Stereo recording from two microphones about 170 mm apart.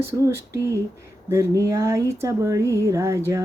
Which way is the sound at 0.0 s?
15° right (ahead or behind).